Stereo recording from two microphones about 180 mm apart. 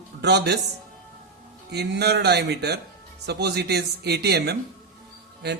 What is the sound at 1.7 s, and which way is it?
Speech, 65° right (ahead or behind).